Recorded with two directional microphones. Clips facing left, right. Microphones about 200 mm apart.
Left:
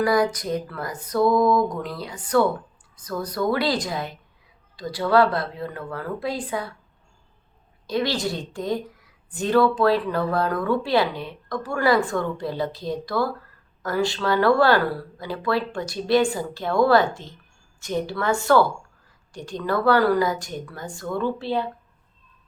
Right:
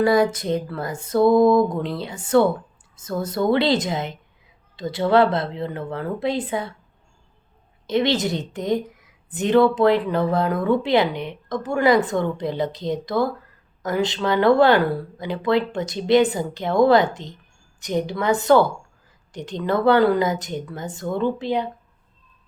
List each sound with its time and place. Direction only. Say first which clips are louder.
0.0 s a woman's voice: right 3 dB; 25° right (ahead or behind)
7.9 s a woman's voice: right 4 dB; 20° right (ahead or behind)